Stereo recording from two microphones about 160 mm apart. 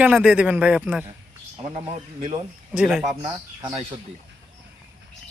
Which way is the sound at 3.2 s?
25° right (ahead or behind).